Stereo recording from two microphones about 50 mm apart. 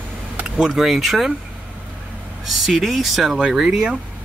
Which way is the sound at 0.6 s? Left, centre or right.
Centre.